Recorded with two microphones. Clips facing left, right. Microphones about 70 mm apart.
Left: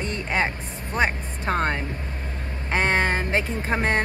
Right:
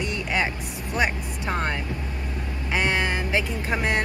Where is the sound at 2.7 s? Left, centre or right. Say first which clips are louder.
Left 2 dB; left.